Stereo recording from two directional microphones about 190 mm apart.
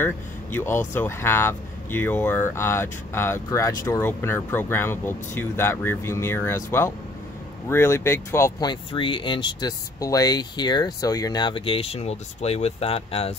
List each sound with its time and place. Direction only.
0.0 s speech: 10° left (ahead or behind); by 13.3 s 30° left (ahead or behind)